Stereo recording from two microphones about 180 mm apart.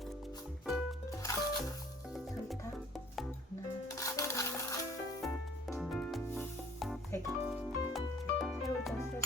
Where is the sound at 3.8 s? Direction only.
15° left (ahead or behind).